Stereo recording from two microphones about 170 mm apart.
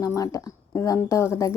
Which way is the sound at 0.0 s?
20° left (ahead or behind).